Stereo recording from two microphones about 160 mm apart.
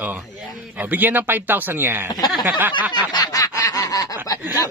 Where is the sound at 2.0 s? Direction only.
25° left (ahead or behind).